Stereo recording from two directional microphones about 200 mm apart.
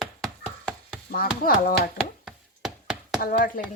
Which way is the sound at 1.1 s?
45° left (ahead or behind).